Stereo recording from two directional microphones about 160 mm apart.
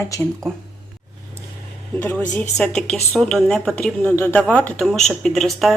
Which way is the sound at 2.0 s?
10° left (ahead or behind).